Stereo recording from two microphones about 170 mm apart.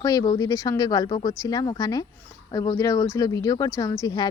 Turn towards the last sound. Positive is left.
turn(degrees=20)  # may be behind; listen again after turning